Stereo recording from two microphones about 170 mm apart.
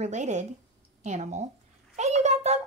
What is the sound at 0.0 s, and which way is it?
A woman's voice, 45° right (ahead or behind).